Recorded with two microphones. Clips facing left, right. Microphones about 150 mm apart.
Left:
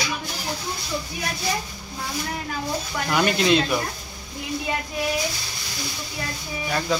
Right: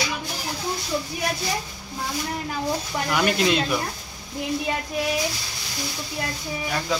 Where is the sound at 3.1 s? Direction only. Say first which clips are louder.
Left 2 dB; 5° right (ahead or behind).